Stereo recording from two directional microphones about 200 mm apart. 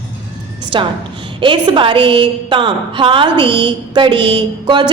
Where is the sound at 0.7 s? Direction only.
25° right (ahead or behind).